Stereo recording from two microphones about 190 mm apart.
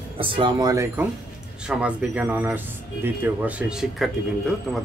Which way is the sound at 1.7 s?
5° right (ahead or behind).